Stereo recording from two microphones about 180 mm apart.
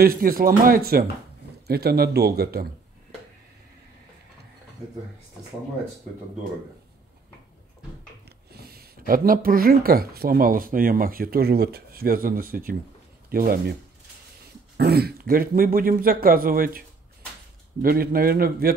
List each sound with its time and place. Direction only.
0.0 s a man's voice: 50° right (ahead or behind)
8.5 s a man's voice: 60° right (ahead or behind)
14.8 s a man's voice: 60° right (ahead or behind)
17.8 s speech: 55° right (ahead or behind)